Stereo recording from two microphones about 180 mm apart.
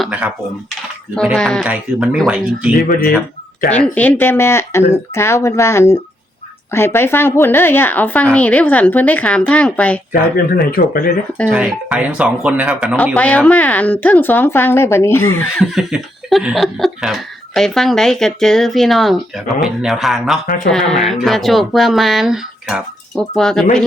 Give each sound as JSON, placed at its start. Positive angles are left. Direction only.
{"t": 0.0, "sound": "typing", "side_deg": -10}
{"t": 1.1, "sound": "speech", "side_deg": 5}
{"t": 2.7, "sound": "speech", "side_deg": 50}
{"t": 3.7, "sound": "a woman's voice", "side_deg": 10}
{"t": 10.1, "sound": "speech", "side_deg": 55}
{"t": 11.4, "sound": "speech", "side_deg": -5}
{"t": 13.1, "sound": "a woman's voice", "side_deg": 5}
{"t": 15.5, "sound": "speech", "side_deg": 0}